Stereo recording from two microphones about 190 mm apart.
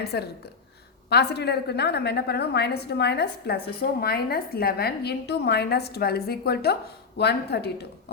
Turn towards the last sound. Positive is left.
turn(degrees=60)  # may be behind; listen again after turning